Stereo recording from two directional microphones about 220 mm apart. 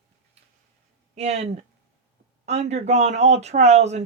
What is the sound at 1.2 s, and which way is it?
Speech, 30° right (ahead or behind).